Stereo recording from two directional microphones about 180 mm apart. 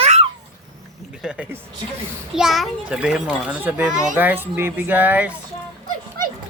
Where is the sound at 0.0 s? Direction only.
35° right (ahead or behind).